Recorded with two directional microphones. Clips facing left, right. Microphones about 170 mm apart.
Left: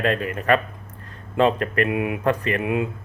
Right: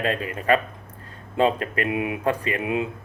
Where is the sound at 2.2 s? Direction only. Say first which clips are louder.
Left 2 dB; 10° right (ahead or behind).